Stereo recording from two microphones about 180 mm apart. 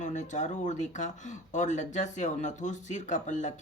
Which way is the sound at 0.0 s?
40° left (ahead or behind).